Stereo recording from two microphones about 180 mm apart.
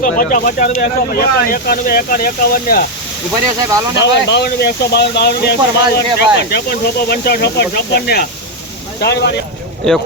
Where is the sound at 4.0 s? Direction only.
70° left (ahead or behind).